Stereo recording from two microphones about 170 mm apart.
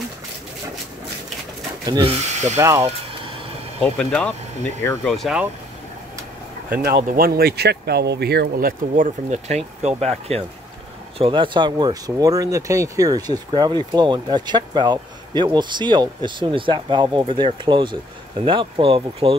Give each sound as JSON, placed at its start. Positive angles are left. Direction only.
{"t": 2.0, "sound": "speech", "side_deg": -40}
{"t": 3.8, "sound": "speech", "side_deg": 5}
{"t": 6.8, "sound": "speech", "side_deg": -60}